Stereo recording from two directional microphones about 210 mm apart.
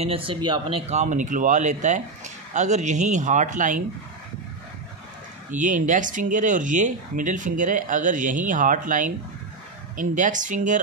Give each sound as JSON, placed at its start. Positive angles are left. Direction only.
{"t": 0.0, "sound": "speech", "side_deg": -25}
{"t": 5.5, "sound": "speech", "side_deg": -35}